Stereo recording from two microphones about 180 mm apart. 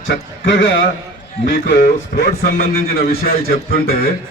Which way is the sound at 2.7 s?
55° left (ahead or behind).